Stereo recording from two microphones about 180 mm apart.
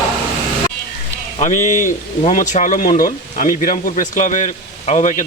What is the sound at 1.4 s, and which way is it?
Speech, 45° left (ahead or behind).